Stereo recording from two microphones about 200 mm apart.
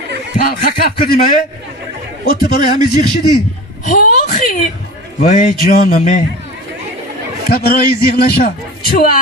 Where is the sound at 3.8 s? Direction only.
40° left (ahead or behind).